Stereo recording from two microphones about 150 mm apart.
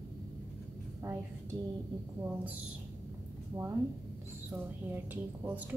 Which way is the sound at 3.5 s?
20° right (ahead or behind).